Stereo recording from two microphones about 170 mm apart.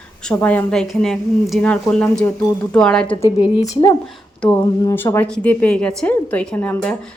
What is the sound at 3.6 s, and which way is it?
Speech, 20° left (ahead or behind).